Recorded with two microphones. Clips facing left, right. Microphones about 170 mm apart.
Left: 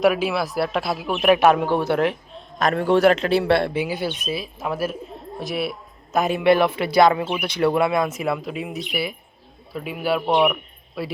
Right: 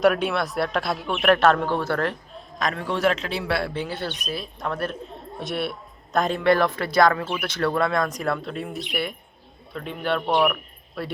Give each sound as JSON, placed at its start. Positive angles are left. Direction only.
{"t": 0.0, "sound": "speech", "side_deg": 0}
{"t": 1.4, "sound": "speech", "side_deg": 15}
{"t": 2.8, "sound": "speech", "side_deg": 0}
{"t": 7.8, "sound": "a man's voice", "side_deg": 5}